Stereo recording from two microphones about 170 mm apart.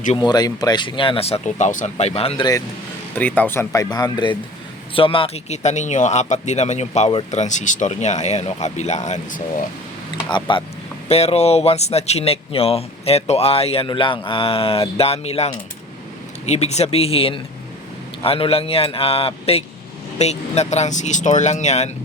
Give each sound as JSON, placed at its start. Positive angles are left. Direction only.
{"t": 0.2, "sound": "speech", "side_deg": 25}
{"t": 3.2, "sound": "speech", "side_deg": 10}
{"t": 10.5, "sound": "speech", "side_deg": 30}
{"t": 16.5, "sound": "speech", "side_deg": 40}